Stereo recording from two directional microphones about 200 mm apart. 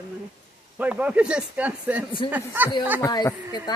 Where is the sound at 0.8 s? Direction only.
10° right (ahead or behind).